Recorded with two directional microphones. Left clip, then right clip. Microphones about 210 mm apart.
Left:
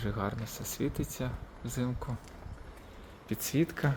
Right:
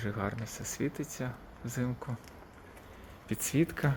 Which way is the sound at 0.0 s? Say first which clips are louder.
Even; 10° left (ahead or behind).